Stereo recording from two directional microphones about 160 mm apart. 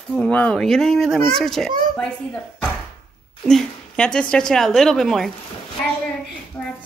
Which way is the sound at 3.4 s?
5° left (ahead or behind).